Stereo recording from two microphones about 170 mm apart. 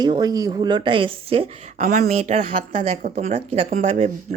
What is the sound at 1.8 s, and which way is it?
A woman's voice, 50° right (ahead or behind).